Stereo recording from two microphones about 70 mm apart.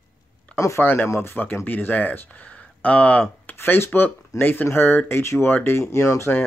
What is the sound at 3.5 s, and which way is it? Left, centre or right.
Speech, left.